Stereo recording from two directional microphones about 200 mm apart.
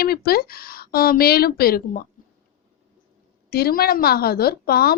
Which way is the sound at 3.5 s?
50° left (ahead or behind).